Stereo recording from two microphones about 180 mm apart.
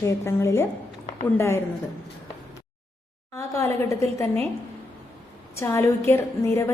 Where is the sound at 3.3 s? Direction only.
15° left (ahead or behind).